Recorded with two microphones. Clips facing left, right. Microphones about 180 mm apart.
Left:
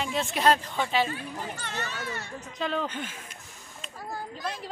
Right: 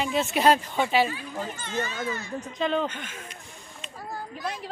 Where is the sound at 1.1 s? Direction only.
70° left (ahead or behind).